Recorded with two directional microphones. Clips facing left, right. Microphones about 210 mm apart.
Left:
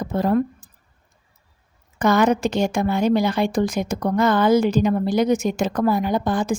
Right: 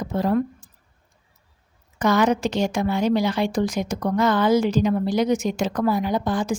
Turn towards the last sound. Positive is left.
turn(degrees=50)  # may be behind; listen again after turning